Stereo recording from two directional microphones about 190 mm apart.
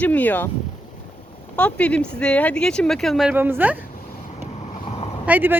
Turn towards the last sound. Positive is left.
turn(degrees=-10)  # may be behind; listen again after turning